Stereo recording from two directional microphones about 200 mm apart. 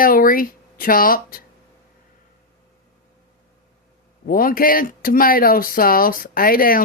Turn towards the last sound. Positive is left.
turn(degrees=45)  # may be behind; listen again after turning